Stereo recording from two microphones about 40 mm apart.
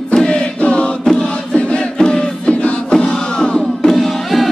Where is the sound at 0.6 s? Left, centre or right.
Left.